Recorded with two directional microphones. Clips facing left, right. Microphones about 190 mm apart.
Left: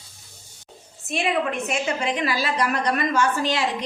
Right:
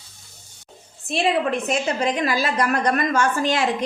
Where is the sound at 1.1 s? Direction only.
35° right (ahead or behind).